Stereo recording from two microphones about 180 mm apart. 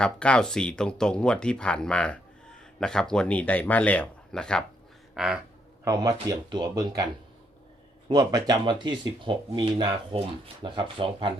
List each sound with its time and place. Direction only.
0.0 s speech: 5° left (ahead or behind)
5.1 s a sound: 5° right (ahead or behind)
5.8 s speech: 20° right (ahead or behind)